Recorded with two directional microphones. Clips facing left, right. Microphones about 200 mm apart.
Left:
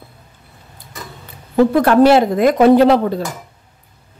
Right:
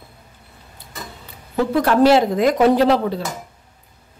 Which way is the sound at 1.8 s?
55° left (ahead or behind).